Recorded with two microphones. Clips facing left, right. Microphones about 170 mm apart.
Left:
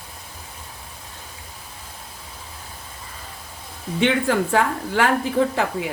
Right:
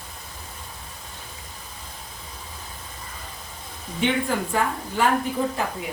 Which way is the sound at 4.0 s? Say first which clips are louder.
Left 4 dB; 85° left.